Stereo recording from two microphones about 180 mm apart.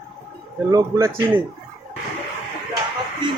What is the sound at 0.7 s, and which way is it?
Speech, 15° right (ahead or behind).